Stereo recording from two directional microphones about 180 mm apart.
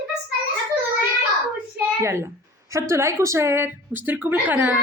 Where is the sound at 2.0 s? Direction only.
15° right (ahead or behind).